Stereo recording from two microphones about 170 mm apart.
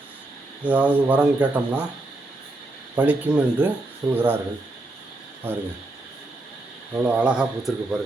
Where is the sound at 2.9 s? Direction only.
10° right (ahead or behind).